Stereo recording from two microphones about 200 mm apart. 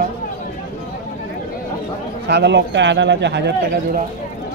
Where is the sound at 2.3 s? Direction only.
60° right (ahead or behind).